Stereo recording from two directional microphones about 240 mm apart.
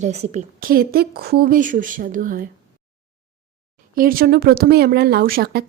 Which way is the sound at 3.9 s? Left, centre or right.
Right.